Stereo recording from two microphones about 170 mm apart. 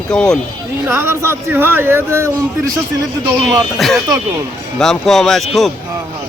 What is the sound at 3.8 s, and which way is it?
A man's voice, centre (ahead or behind).